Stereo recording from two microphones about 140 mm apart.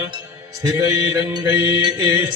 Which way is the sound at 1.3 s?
30° right (ahead or behind).